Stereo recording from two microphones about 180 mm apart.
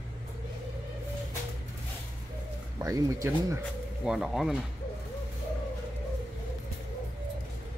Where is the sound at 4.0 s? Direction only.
5° right (ahead or behind).